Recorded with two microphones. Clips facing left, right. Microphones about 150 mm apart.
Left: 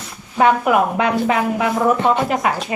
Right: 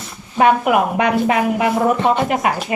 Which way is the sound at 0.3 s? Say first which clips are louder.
Right 1 dB; 10° right (ahead or behind).